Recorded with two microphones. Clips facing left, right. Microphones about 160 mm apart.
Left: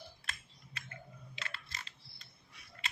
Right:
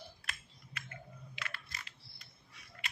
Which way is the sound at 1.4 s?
30° left (ahead or behind).